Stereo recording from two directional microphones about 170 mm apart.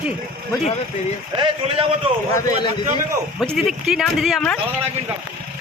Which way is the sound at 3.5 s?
Centre (ahead or behind).